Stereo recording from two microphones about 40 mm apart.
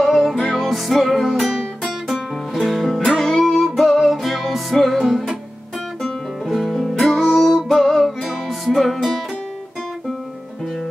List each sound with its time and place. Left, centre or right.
0.0 s music: centre